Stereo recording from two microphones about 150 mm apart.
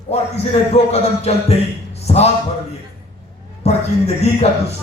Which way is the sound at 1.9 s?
45° left (ahead or behind).